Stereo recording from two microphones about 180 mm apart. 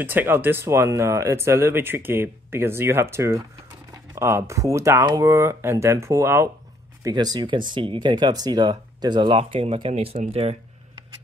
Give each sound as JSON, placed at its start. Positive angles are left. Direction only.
{"t": 0.0, "sound": "speech", "side_deg": -10}